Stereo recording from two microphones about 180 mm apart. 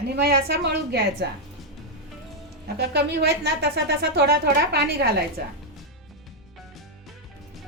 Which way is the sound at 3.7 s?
65° right (ahead or behind).